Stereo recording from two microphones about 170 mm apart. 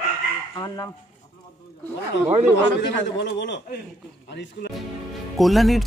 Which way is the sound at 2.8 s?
90° left.